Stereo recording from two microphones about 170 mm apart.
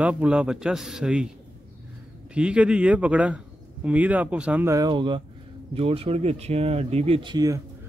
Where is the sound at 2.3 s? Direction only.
5° right (ahead or behind).